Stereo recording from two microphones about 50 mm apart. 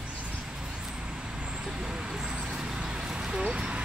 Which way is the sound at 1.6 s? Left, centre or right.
Centre.